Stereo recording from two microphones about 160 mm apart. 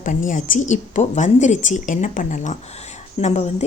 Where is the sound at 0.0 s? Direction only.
55° left (ahead or behind).